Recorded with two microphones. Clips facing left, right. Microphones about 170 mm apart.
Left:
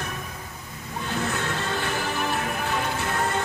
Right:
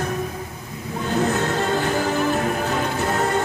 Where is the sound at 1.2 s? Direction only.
40° right (ahead or behind).